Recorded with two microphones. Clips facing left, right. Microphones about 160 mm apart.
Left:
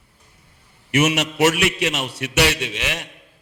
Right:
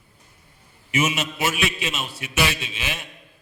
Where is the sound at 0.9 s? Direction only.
75° left (ahead or behind).